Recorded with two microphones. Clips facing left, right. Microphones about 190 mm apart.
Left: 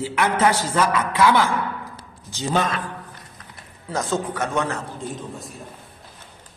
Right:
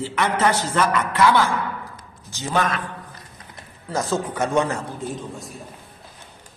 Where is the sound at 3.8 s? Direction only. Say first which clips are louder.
Right 1 dB; centre (ahead or behind).